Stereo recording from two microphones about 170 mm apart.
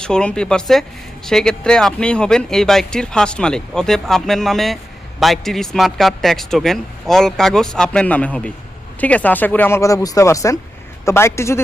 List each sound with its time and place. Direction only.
0.0 s speech: 5° left (ahead or behind)